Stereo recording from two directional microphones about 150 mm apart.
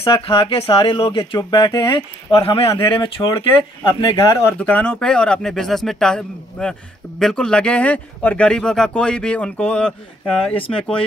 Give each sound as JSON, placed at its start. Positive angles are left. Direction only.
{"t": 0.0, "sound": "speech", "side_deg": 35}
{"t": 4.6, "sound": "speech", "side_deg": 10}